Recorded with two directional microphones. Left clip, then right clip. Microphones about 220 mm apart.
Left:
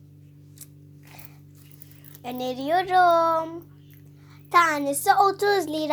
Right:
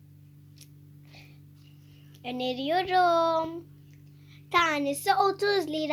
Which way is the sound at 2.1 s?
10° right (ahead or behind).